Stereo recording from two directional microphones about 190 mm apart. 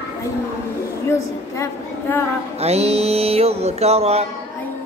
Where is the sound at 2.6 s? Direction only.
35° right (ahead or behind).